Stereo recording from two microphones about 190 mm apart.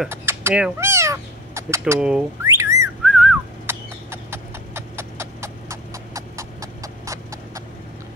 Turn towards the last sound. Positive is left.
turn(degrees=-15)  # may be behind; listen again after turning